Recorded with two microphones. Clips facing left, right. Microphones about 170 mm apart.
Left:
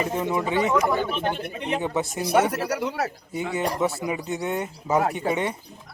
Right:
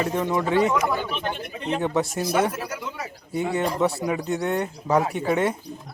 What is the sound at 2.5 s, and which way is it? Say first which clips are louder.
Speech: left 5 dB; 70° left (ahead or behind).